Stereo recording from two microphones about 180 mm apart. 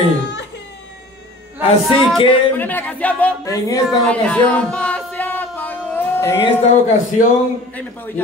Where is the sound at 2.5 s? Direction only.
10° left (ahead or behind).